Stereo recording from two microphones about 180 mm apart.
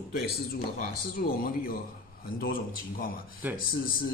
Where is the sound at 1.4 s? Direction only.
50° left (ahead or behind).